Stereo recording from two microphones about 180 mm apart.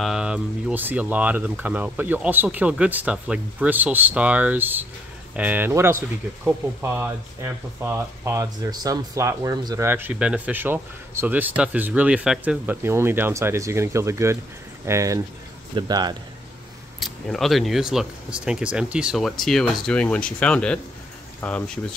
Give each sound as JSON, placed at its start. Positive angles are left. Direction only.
{"t": 0.0, "sound": "speech", "side_deg": -5}
{"t": 9.8, "sound": "a man's voice", "side_deg": -10}
{"t": 17.0, "sound": "speech", "side_deg": 0}